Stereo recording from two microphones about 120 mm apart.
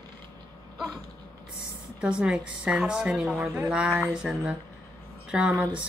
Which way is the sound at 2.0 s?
10° right (ahead or behind).